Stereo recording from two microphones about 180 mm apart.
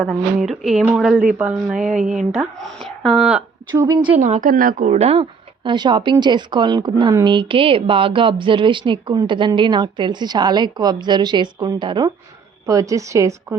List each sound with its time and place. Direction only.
0.0 s a woman's voice: centre (ahead or behind)
3.7 s a woman's voice: 20° right (ahead or behind)
4.2 s a woman's voice: 45° right (ahead or behind); by 13.6 s 15° right (ahead or behind)